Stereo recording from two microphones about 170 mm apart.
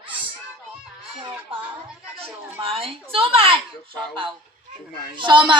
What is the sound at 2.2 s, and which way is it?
A woman's voice, 35° right (ahead or behind).